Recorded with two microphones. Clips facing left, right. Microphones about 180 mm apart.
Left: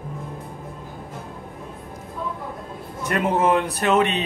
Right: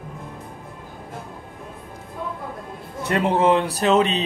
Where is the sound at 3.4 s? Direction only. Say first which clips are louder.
Right 2 dB; 30° right (ahead or behind).